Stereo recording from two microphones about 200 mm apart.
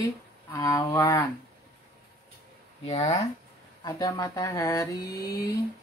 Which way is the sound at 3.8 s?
15° left (ahead or behind).